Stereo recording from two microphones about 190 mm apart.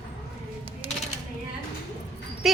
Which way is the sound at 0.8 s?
30° right (ahead or behind).